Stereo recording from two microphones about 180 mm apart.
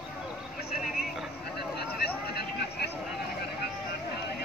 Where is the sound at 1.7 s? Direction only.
60° left (ahead or behind).